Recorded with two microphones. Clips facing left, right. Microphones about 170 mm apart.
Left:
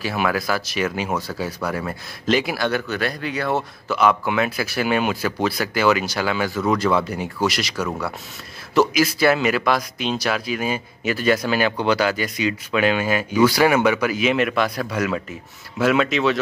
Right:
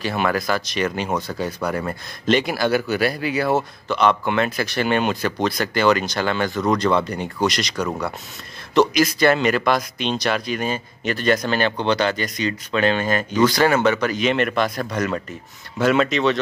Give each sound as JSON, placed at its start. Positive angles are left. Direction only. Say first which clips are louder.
{"t": 0.0, "sound": "speech", "louder": "right 1 dB", "side_deg": 5}